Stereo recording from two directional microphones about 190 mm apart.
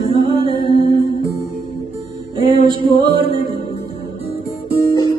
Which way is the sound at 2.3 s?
25° right (ahead or behind).